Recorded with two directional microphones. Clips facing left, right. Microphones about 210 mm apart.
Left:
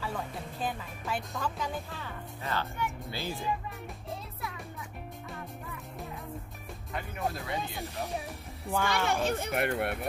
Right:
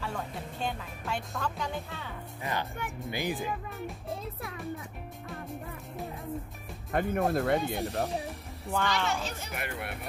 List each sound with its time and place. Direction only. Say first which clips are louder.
0.0 s speech: even; centre (ahead or behind)
2.4 s speech: left 1 dB; 15° right (ahead or behind)
6.9 s speech: right 8 dB; 50° right (ahead or behind)
8.6 s speech: even; 5° left (ahead or behind)
9.1 s speech: left 6 dB; 55° left (ahead or behind)